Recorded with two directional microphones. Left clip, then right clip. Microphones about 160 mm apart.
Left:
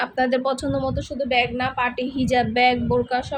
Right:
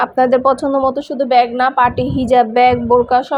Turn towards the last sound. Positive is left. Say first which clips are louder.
# right 10 dB
turn(degrees=-15)  # may be behind; listen again after turning